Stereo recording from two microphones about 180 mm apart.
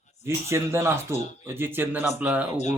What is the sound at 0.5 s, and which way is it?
A man's voice, 15° right (ahead or behind).